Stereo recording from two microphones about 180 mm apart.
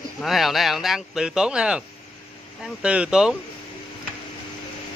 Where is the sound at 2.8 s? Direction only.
5° right (ahead or behind).